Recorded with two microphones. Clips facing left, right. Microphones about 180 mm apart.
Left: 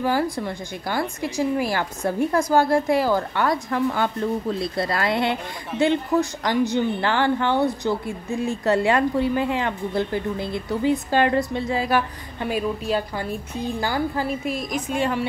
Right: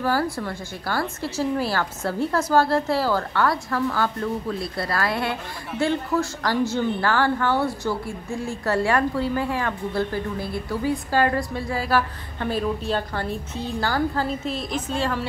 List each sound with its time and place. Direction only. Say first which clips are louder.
0.0 s speech: left 1 dB; 15° left (ahead or behind)